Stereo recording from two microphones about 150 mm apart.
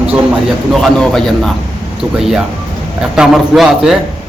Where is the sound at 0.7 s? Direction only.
5° left (ahead or behind).